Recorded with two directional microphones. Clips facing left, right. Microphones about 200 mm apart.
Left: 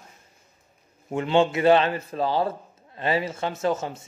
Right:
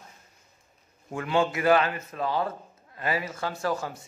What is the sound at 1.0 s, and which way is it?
A man's voice, 25° left (ahead or behind).